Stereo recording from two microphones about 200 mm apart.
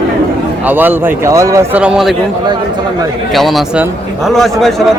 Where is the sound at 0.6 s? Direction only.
10° right (ahead or behind).